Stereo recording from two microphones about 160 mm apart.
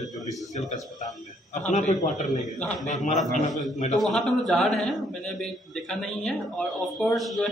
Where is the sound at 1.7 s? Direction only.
50° left (ahead or behind).